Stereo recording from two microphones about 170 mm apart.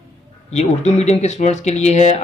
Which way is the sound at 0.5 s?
40° left (ahead or behind).